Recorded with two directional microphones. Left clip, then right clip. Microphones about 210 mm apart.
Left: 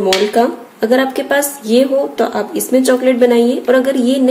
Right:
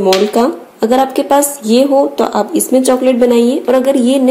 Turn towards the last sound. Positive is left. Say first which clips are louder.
# right 3 dB
turn(degrees=-20)  # may be behind; listen again after turning